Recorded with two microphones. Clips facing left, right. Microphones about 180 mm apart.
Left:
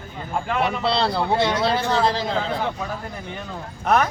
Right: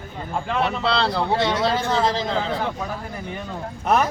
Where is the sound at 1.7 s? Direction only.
15° right (ahead or behind).